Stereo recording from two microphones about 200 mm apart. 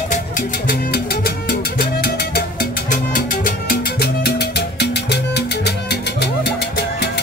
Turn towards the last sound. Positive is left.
turn(degrees=55)  # may be behind; listen again after turning